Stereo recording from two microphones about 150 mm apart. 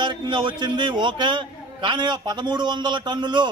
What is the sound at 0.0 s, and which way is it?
A man's voice, 30° right (ahead or behind).